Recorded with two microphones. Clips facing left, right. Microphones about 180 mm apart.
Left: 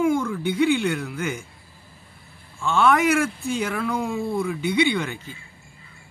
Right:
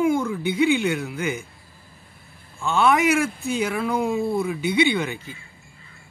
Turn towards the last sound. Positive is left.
turn(degrees=-15)  # may be behind; listen again after turning